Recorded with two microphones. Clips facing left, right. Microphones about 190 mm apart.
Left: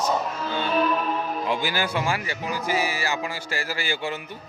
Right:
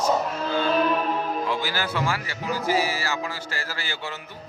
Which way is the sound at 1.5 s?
15° left (ahead or behind).